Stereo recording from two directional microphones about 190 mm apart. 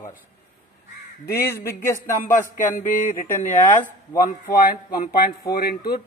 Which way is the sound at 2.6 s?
45° left (ahead or behind).